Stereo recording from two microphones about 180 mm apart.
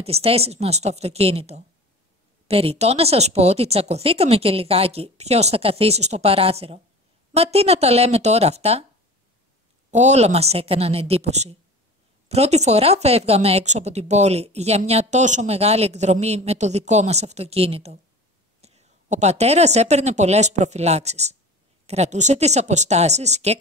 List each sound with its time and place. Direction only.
0.0 s speech: 35° right (ahead or behind)
9.8 s speech: 40° right (ahead or behind)